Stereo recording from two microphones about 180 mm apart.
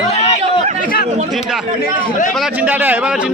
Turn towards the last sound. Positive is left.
turn(degrees=-10)  # may be behind; listen again after turning